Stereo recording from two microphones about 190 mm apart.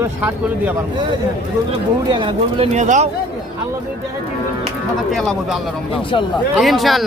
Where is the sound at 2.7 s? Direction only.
40° right (ahead or behind).